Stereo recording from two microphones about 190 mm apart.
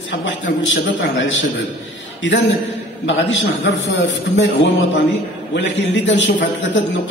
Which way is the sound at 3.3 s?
70° left (ahead or behind).